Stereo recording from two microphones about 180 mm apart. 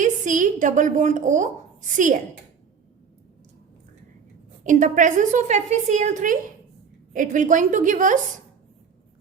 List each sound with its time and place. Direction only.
0.0 s a woman's voice: 45° right (ahead or behind)
4.6 s a woman's voice: 45° right (ahead or behind)